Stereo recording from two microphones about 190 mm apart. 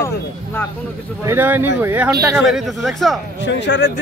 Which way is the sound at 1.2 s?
10° right (ahead or behind).